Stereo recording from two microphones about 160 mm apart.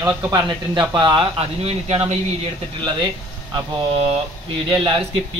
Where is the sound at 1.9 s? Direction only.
40° right (ahead or behind).